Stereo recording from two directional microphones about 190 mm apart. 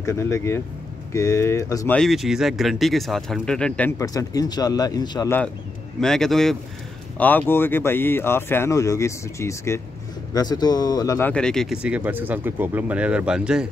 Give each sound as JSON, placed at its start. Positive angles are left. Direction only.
{"t": 0.0, "sound": "speech", "side_deg": 15}
{"t": 2.0, "sound": "speech", "side_deg": 0}
{"t": 4.0, "sound": "a man's voice", "side_deg": 20}
{"t": 5.9, "sound": "speech", "side_deg": 0}